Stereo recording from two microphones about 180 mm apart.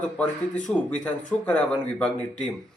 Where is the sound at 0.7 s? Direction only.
5° left (ahead or behind).